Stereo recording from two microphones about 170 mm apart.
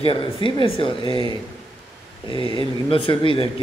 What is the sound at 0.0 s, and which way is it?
A man's voice, 30° left (ahead or behind).